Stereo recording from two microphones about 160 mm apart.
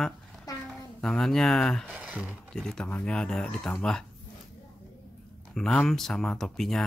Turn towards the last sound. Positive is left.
turn(degrees=0)  # may be behind; listen again after turning